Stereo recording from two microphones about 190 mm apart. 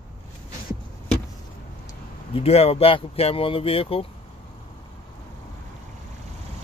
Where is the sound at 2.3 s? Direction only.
30° left (ahead or behind).